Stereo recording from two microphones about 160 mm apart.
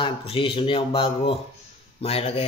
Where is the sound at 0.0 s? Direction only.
35° left (ahead or behind).